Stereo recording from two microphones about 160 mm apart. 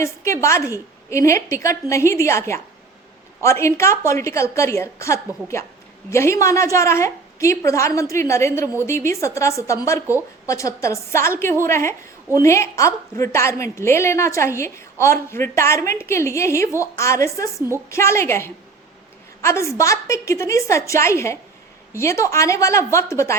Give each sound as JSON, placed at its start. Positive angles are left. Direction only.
{"t": 0.0, "sound": "a woman's voice", "side_deg": 20}